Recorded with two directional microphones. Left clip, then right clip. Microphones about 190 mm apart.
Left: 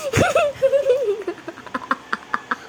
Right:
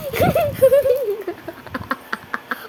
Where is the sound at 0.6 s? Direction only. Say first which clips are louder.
Right 6 dB; 60° right (ahead or behind).